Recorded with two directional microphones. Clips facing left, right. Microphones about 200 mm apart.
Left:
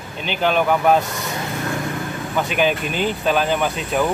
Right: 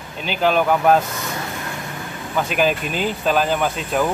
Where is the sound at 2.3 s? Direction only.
Centre (ahead or behind).